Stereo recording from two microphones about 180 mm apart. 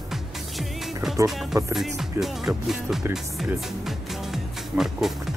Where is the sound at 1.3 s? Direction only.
Centre (ahead or behind).